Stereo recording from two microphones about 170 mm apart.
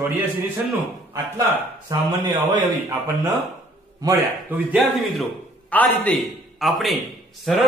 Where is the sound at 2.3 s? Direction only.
25° right (ahead or behind).